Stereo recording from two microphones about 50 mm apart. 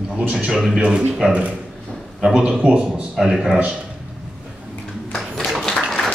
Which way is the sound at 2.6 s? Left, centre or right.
Right.